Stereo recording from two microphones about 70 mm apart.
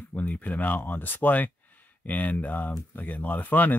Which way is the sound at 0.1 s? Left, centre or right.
Left.